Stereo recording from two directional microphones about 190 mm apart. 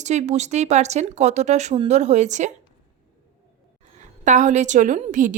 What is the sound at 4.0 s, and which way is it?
A woman's voice, 40° right (ahead or behind).